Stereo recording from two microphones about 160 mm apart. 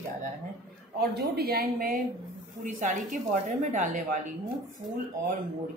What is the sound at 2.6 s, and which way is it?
Speech, 50° right (ahead or behind).